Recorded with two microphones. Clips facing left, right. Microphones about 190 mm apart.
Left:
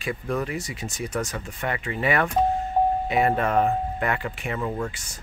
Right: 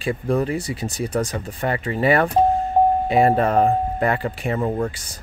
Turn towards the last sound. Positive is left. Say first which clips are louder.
# right 6 dB
turn(degrees=-35)  # may be behind; listen again after turning